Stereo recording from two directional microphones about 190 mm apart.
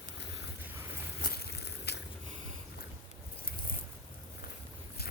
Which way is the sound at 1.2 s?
55° left (ahead or behind).